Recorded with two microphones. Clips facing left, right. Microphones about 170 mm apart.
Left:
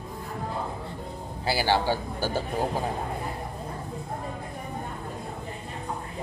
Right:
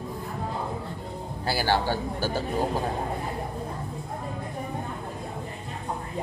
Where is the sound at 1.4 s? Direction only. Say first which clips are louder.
Left 1 dB; 15° left (ahead or behind).